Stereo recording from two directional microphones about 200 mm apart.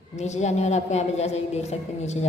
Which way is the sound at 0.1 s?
35° left (ahead or behind).